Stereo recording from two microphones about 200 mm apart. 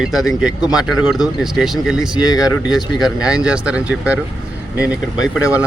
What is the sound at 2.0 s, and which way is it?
Speech, 20° left (ahead or behind).